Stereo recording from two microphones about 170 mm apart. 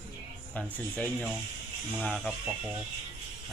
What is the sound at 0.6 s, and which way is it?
Speech, 5° left (ahead or behind).